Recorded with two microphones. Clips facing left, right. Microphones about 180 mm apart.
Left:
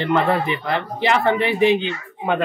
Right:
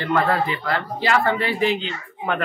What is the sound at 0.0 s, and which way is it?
Speech, 20° left (ahead or behind).